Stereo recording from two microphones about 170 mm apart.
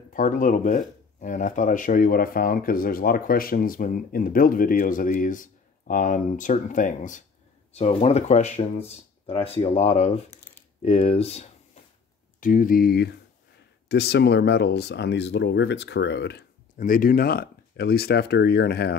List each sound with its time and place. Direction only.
0.1 s speech: 50° left (ahead or behind); by 11.5 s 35° left (ahead or behind)
12.4 s speech: 50° left (ahead or behind); by 18.9 s 75° left (ahead or behind)